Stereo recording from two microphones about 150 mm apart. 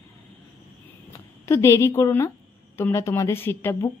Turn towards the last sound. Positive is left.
turn(degrees=15)  # may be behind; listen again after turning